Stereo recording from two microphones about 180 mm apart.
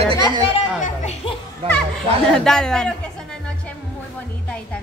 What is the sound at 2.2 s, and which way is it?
Speech, 5° left (ahead or behind).